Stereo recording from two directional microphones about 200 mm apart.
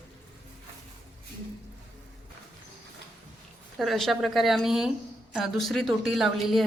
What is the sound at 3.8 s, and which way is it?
Speech, centre (ahead or behind).